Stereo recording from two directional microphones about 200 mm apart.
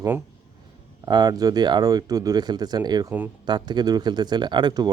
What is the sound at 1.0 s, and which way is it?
Speech, 20° right (ahead or behind).